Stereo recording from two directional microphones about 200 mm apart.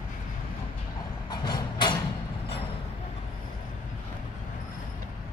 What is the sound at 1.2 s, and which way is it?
Train, 20° left (ahead or behind).